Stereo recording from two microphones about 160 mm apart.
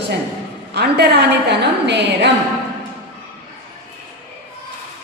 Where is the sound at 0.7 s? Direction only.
90° right.